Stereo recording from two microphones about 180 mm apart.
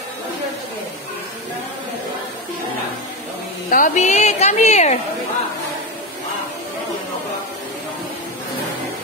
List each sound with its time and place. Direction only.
3.7 s a woman's voice: 45° left (ahead or behind)